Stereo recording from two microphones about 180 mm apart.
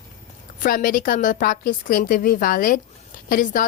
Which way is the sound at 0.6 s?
50° left (ahead or behind).